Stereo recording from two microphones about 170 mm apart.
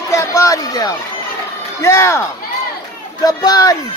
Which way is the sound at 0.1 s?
15° left (ahead or behind).